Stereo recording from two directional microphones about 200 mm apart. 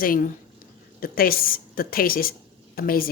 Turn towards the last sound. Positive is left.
turn(degrees=45)  # may be behind; listen again after turning